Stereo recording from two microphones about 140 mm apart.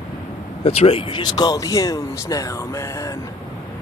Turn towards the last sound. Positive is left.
turn(degrees=25)  # may be behind; listen again after turning